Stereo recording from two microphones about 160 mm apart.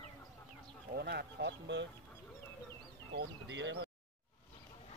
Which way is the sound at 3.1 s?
90° right.